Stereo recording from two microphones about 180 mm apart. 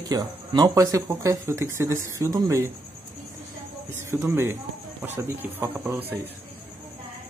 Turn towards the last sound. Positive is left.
turn(degrees=-10)  # may be behind; listen again after turning